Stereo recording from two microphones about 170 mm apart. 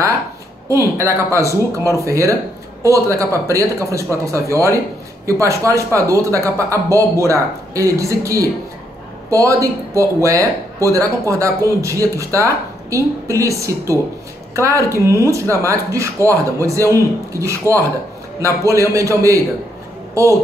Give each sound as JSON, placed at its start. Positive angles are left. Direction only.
{"t": 0.7, "sound": "a man's voice", "side_deg": -15}
{"t": 1.5, "sound": "speech", "side_deg": 20}
{"t": 2.0, "sound": "a man's voice", "side_deg": -20}